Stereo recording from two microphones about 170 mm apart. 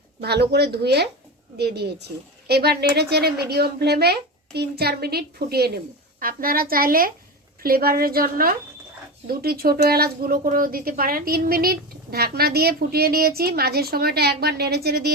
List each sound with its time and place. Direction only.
0.2 s a woman's voice: 75° right (ahead or behind)